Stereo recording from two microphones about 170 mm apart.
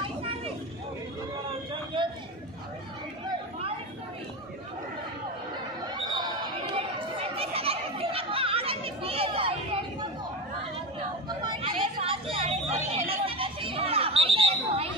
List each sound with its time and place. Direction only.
2.0 s a sound: 30° right (ahead or behind)
6.7 s chatter: 35° right (ahead or behind)
11.2 s vehicle: 25° right (ahead or behind)
12.7 s chatter: 35° right (ahead or behind)